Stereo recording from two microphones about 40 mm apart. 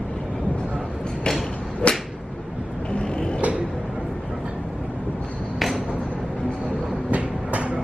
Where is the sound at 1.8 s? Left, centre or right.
Left.